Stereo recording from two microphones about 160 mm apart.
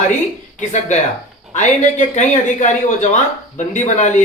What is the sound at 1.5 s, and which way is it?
Speech, 50° left (ahead or behind).